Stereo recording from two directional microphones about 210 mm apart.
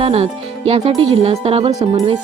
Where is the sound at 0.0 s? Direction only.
30° right (ahead or behind).